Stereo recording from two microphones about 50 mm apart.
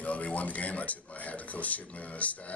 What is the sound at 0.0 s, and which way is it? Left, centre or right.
Speech, left.